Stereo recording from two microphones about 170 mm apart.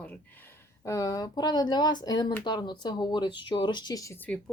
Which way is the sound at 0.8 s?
20° left (ahead or behind).